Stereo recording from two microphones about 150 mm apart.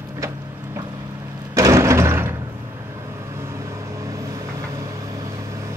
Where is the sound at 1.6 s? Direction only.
20° right (ahead or behind).